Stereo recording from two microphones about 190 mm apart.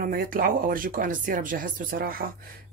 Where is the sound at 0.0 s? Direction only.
50° right (ahead or behind).